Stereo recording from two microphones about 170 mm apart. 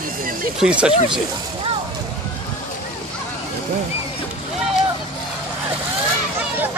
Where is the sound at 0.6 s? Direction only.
5° right (ahead or behind).